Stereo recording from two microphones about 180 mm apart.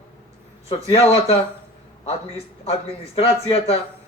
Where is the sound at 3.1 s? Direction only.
35° left (ahead or behind).